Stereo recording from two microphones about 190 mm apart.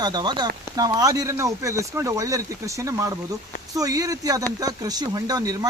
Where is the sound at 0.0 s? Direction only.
20° right (ahead or behind).